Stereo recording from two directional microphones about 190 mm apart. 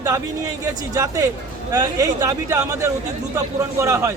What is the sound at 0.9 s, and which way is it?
A man's voice, 15° right (ahead or behind).